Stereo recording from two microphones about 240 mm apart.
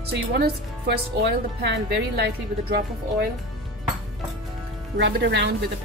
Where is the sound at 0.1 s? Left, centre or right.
Right.